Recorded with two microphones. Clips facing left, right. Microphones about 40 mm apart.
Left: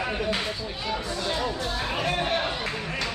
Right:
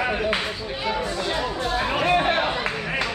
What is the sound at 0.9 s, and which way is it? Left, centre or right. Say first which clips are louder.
Chatter: right 4 dB; right.